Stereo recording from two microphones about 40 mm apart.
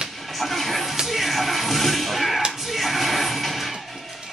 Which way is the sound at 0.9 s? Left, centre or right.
Centre.